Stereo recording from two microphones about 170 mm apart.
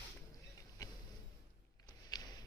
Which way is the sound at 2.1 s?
25° left (ahead or behind).